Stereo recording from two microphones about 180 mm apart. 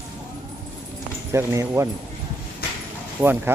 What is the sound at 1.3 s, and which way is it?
Speech, 15° right (ahead or behind).